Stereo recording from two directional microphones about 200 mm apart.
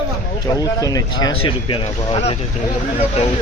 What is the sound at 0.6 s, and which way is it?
Speech, 15° left (ahead or behind).